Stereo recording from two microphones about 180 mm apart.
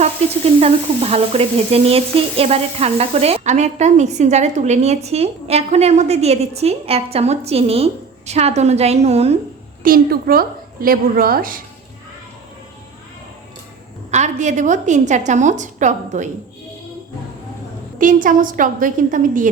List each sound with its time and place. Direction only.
0.6 s frying: 35° right (ahead or behind)
9.8 s a woman's voice: 55° right (ahead or behind)
14.1 s a woman's voice: 40° right (ahead or behind)
18.0 s a woman's voice: 45° right (ahead or behind)